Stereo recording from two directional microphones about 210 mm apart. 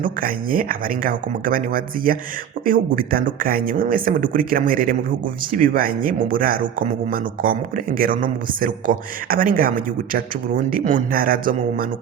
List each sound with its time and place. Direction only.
0.0 s speech: 40° right (ahead or behind)